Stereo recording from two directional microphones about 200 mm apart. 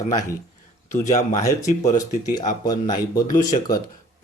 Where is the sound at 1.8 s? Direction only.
15° left (ahead or behind).